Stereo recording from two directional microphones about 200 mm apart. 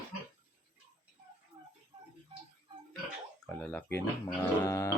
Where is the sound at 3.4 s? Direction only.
5° left (ahead or behind).